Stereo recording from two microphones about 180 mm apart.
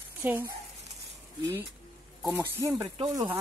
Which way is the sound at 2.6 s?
20° right (ahead or behind).